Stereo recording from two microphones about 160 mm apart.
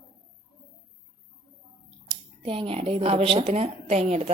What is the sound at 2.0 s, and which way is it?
Speech, 35° right (ahead or behind).